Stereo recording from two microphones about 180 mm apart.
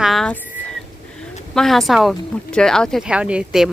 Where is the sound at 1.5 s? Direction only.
Centre (ahead or behind).